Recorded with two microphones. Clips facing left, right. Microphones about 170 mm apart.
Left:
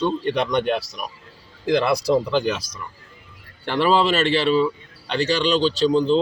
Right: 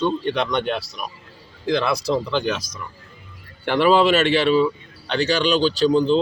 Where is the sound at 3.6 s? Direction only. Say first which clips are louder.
Right 3 dB; centre (ahead or behind).